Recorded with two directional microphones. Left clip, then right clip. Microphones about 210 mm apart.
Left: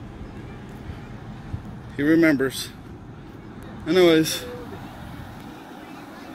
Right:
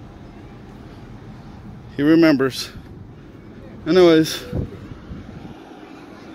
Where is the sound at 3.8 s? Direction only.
30° right (ahead or behind).